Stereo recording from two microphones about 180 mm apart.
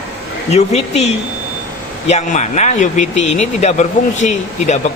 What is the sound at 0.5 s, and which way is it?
A man's voice, 35° left (ahead or behind).